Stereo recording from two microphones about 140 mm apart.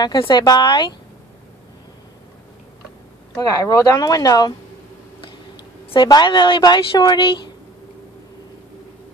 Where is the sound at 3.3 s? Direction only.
25° left (ahead or behind).